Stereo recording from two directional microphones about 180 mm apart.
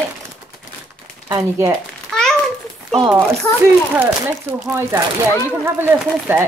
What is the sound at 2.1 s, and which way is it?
Babbling, 5° left (ahead or behind).